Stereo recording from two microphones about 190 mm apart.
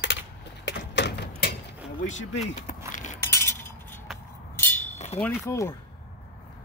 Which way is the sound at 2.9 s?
40° left (ahead or behind).